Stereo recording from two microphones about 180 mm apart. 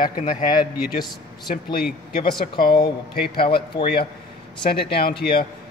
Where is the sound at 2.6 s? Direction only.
55° left (ahead or behind).